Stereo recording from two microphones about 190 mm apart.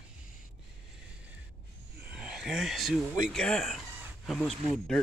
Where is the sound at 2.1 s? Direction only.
5° right (ahead or behind).